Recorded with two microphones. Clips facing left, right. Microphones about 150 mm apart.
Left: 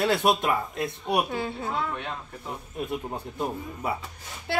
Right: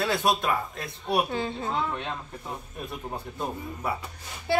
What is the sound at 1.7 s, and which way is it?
Speech, 15° right (ahead or behind).